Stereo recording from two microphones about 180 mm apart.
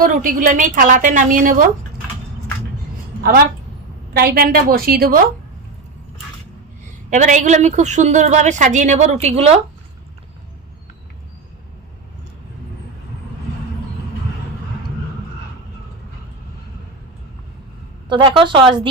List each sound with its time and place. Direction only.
0.0 s a woman's voice: 50° right (ahead or behind)
4.2 s a woman's voice: 60° right (ahead or behind)
7.1 s a woman's voice: 45° right (ahead or behind)
18.1 s a woman's voice: 25° right (ahead or behind)